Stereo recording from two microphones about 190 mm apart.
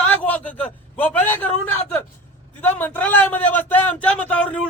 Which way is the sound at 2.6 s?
10° left (ahead or behind).